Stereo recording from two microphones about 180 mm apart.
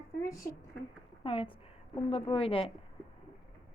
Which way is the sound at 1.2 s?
30° left (ahead or behind).